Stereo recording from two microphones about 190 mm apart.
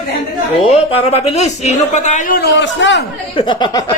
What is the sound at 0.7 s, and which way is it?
A woman's voice, 30° left (ahead or behind).